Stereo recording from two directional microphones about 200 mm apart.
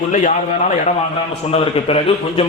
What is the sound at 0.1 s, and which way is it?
A man's voice, 40° left (ahead or behind).